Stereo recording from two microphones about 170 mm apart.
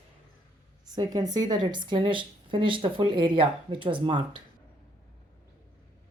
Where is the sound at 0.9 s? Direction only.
25° right (ahead or behind).